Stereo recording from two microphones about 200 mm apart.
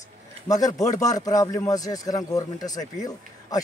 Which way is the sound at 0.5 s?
20° left (ahead or behind).